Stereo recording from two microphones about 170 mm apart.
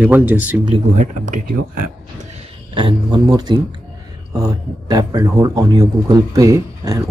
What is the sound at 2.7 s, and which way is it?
Speech, 30° right (ahead or behind).